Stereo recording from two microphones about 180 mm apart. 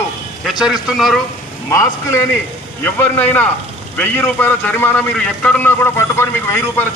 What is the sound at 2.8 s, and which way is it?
A man's voice, 10° left (ahead or behind).